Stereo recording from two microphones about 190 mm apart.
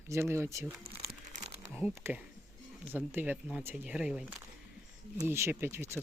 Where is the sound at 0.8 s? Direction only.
55° right (ahead or behind).